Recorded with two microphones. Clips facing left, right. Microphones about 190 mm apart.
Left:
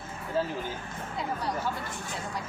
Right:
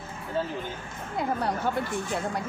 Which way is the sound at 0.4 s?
Centre (ahead or behind).